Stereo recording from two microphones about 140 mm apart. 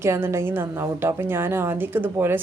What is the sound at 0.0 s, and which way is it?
A woman's voice, 20° right (ahead or behind).